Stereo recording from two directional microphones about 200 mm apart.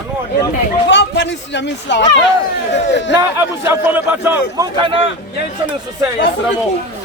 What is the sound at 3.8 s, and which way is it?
A man's voice, 10° right (ahead or behind).